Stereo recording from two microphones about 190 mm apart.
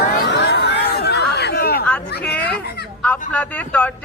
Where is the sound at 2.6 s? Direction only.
60° left (ahead or behind).